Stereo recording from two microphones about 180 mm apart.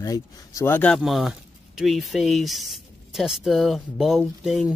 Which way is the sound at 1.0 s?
Centre (ahead or behind).